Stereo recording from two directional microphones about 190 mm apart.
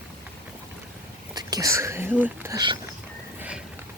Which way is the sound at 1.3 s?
20° right (ahead or behind).